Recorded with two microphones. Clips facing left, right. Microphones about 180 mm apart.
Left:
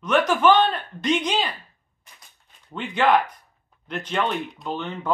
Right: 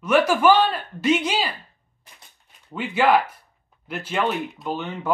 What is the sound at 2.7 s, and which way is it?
Speech, 5° right (ahead or behind).